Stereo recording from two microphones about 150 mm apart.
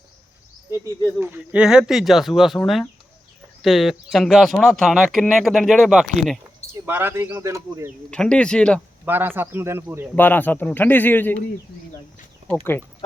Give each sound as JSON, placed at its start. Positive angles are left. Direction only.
{"t": 1.2, "sound": "speech", "side_deg": -10}
{"t": 6.7, "sound": "speech", "side_deg": -15}
{"t": 8.1, "sound": "a man's voice", "side_deg": 5}
{"t": 9.0, "sound": "speech", "side_deg": -15}
{"t": 10.2, "sound": "a man's voice", "side_deg": 10}